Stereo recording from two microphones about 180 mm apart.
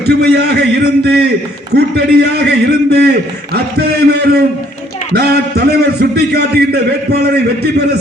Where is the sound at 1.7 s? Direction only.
65° right (ahead or behind).